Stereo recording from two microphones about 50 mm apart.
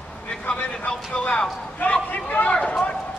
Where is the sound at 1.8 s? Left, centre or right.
Left.